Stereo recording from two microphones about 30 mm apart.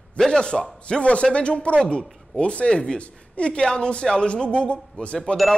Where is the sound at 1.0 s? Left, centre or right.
Left.